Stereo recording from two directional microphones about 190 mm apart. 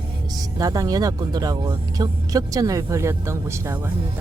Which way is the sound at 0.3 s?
20° right (ahead or behind).